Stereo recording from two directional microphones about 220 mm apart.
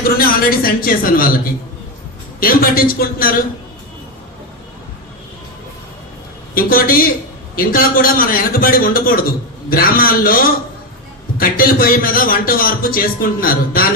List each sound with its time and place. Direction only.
0.2 s a man's voice: 40° left (ahead or behind)
2.4 s a man's voice: 40° left (ahead or behind)
6.5 s a man's voice: 40° left (ahead or behind)